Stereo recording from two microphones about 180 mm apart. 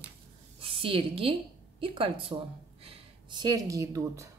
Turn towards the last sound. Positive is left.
turn(degrees=-15)  # may be behind; listen again after turning